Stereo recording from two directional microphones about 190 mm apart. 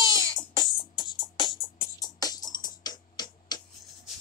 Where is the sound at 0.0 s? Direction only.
25° left (ahead or behind).